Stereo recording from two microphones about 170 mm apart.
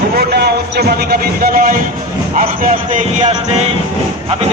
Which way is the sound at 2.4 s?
50° right (ahead or behind).